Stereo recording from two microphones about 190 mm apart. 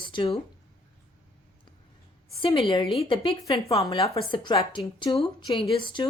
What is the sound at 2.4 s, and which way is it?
A woman's voice, 25° left (ahead or behind).